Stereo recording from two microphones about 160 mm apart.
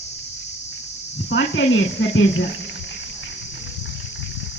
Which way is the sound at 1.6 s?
90° left.